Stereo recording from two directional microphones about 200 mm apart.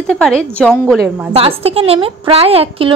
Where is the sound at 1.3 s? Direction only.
30° right (ahead or behind).